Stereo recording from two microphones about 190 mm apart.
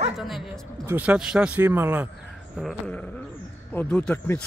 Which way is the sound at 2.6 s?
Centre (ahead or behind).